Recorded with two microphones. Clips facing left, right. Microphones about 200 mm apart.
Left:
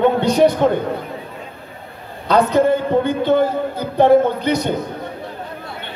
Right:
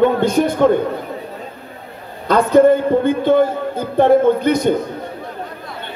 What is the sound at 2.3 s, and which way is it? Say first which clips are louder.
Speech: right 3 dB; 50° right (ahead or behind).